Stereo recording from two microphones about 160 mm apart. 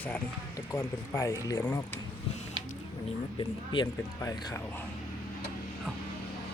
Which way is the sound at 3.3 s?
30° left (ahead or behind).